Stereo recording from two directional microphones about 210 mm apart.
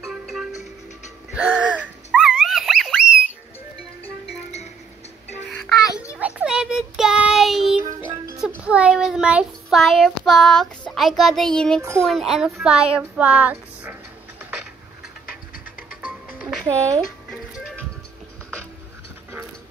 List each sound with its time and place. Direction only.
0.0 s music: centre (ahead or behind)
1.3 s a sound: 5° right (ahead or behind)
5.6 s music: centre (ahead or behind)
6.1 s child singing: 5° right (ahead or behind)
8.4 s a sound: 5° right (ahead or behind)
12.1 s a child's voice: centre (ahead or behind)
12.9 s music: 5° right (ahead or behind)
15.2 s music: 45° left (ahead or behind)
16.0 s music: 5° right (ahead or behind)